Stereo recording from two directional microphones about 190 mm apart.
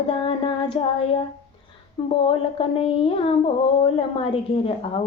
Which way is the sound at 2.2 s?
30° left (ahead or behind).